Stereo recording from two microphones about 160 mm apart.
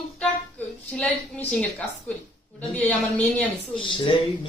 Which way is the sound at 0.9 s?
5° left (ahead or behind).